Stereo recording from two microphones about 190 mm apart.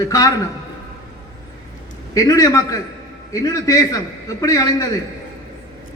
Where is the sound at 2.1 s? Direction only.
20° left (ahead or behind).